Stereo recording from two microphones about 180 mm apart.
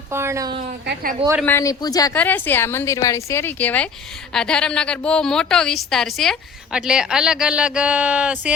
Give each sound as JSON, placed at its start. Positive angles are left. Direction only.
{"t": 0.1, "sound": "speech", "side_deg": -15}
{"t": 1.5, "sound": "a man's voice", "side_deg": 15}